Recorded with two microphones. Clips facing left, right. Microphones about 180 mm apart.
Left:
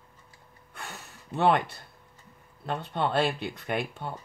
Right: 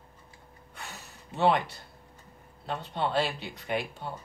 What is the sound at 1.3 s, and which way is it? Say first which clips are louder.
Speech: left 1 dB; 55° left (ahead or behind).